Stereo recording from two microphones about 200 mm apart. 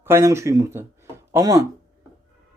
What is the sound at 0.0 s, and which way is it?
A man's voice, 15° right (ahead or behind).